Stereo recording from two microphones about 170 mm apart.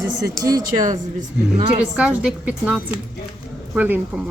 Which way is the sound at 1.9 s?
5° right (ahead or behind).